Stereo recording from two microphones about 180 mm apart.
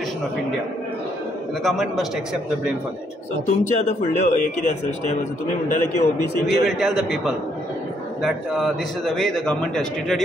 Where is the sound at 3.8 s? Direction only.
40° left (ahead or behind).